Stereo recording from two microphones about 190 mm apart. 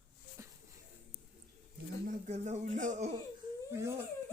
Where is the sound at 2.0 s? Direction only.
40° right (ahead or behind).